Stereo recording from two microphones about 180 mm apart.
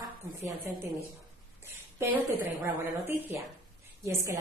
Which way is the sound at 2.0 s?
10° right (ahead or behind).